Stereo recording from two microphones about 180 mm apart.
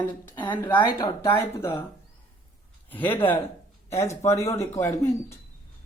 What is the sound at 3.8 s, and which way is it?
Speech, 15° left (ahead or behind).